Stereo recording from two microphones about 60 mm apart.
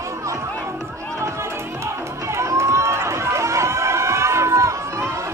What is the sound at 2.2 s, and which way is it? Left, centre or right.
Run, right.